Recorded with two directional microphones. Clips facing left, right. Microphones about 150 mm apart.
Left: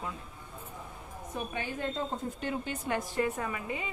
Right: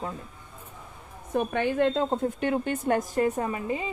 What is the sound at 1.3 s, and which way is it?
A woman's voice, 65° right (ahead or behind).